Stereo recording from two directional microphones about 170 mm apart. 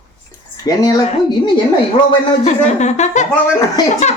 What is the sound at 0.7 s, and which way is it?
Speech, 20° left (ahead or behind).